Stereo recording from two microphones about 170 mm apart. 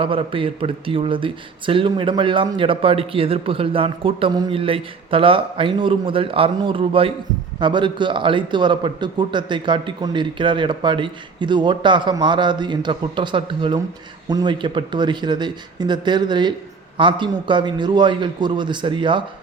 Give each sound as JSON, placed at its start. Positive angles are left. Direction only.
{"t": 0.0, "sound": "a man's voice", "side_deg": -30}